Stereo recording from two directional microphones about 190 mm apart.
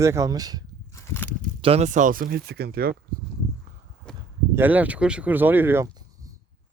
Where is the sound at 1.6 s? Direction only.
35° right (ahead or behind); by 2.9 s 55° right (ahead or behind).